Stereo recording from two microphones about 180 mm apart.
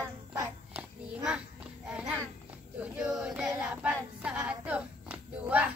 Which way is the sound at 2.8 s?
5° right (ahead or behind).